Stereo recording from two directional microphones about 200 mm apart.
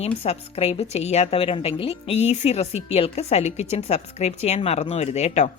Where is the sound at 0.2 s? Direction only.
30° left (ahead or behind).